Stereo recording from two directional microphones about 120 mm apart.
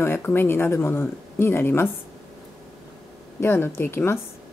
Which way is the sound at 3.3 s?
20° left (ahead or behind).